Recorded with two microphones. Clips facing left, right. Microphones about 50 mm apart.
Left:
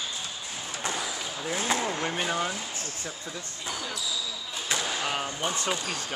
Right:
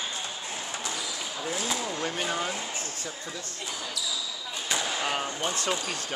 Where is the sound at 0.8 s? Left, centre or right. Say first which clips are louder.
Left 6 dB; left.